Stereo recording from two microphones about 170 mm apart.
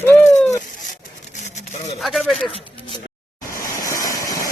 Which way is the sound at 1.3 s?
45° left (ahead or behind).